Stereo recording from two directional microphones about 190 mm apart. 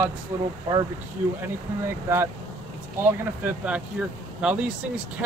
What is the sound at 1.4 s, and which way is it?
Speech, 15° right (ahead or behind).